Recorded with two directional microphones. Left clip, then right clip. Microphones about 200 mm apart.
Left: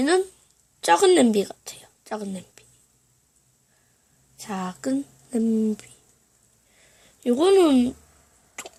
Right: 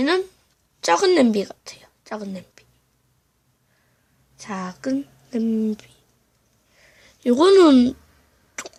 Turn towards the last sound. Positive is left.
turn(degrees=-20)  # may be behind; listen again after turning